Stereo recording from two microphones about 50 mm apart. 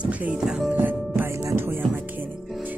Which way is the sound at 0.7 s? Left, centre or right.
Right.